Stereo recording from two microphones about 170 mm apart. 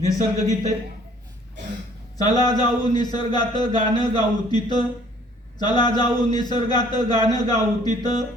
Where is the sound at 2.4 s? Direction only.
25° left (ahead or behind).